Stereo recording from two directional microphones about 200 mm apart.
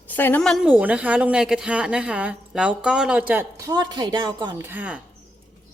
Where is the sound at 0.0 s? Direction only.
10° left (ahead or behind); by 3.7 s 5° right (ahead or behind).